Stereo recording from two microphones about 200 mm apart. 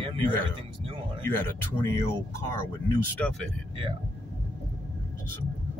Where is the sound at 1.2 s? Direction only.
10° left (ahead or behind).